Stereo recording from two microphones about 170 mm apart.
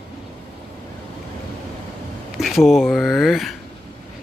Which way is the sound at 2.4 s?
Centre (ahead or behind).